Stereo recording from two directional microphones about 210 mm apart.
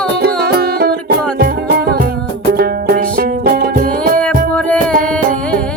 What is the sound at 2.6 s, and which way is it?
Music, 45° right (ahead or behind).